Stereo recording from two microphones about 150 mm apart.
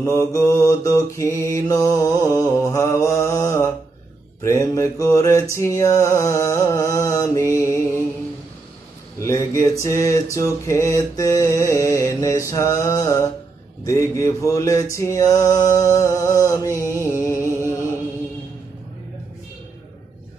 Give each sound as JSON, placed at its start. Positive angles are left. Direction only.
{"t": 0.0, "sound": "mantra", "side_deg": 20}
{"t": 9.2, "sound": "mantra", "side_deg": 20}
{"t": 16.8, "sound": "a sound", "side_deg": 20}